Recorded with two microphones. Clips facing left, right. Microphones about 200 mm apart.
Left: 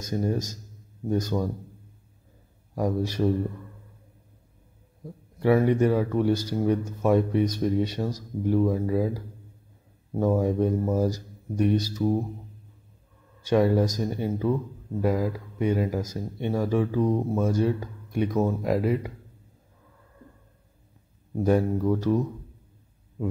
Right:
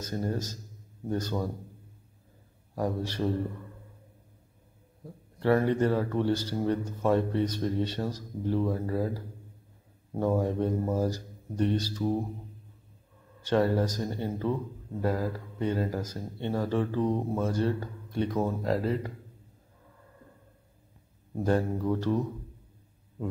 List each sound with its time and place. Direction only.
0.0 s a man's voice: 15° left (ahead or behind)
2.7 s a man's voice: 10° left (ahead or behind)
5.4 s a man's voice: 15° left (ahead or behind)
13.4 s a man's voice: 10° left (ahead or behind)
21.4 s a man's voice: 10° left (ahead or behind)